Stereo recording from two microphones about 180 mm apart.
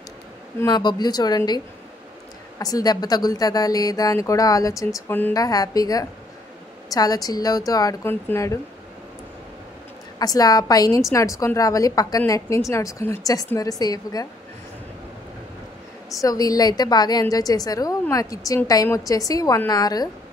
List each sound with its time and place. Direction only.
0.6 s speech: 25° left (ahead or behind)
2.6 s speech: 20° left (ahead or behind)
10.1 s speech: 20° left (ahead or behind)
16.2 s speech: 20° left (ahead or behind)